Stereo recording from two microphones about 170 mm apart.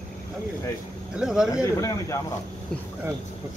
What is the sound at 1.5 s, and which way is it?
Speech, 20° left (ahead or behind).